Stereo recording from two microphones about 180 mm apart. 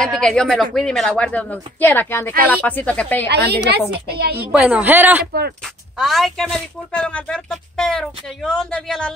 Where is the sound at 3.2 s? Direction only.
70° right (ahead or behind).